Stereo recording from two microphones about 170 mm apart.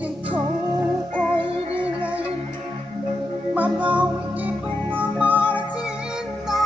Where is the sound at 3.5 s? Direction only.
10° right (ahead or behind).